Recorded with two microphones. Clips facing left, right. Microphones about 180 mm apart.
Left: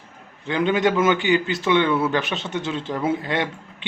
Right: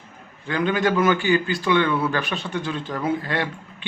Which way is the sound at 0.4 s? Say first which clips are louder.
Left 2 dB; 25° left (ahead or behind).